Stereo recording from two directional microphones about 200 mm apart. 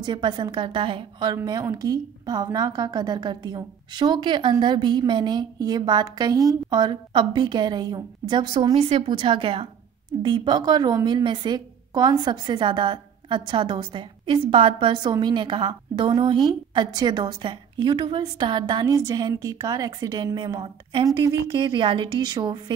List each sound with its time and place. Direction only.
0.0 s a woman's voice: 20° right (ahead or behind)